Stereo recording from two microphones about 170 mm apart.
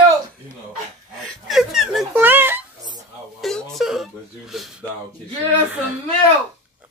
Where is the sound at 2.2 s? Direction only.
10° right (ahead or behind).